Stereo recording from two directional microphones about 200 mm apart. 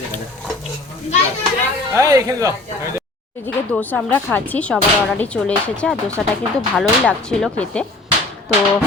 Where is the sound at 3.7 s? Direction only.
10° left (ahead or behind).